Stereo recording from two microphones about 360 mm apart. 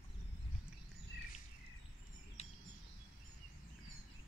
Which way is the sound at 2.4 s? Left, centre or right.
Centre.